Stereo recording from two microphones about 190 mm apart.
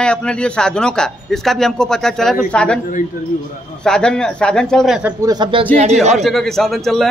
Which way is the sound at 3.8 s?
5° left (ahead or behind).